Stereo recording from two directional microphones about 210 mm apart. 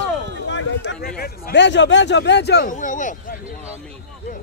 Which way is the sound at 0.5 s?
60° left (ahead or behind).